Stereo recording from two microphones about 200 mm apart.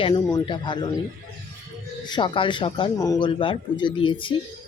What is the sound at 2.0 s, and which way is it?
Speech, 25° left (ahead or behind).